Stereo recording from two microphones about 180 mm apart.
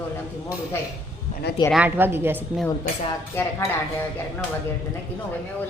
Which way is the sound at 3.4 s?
10° left (ahead or behind).